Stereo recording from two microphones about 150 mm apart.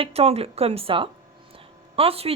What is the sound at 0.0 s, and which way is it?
A woman's voice, 40° right (ahead or behind).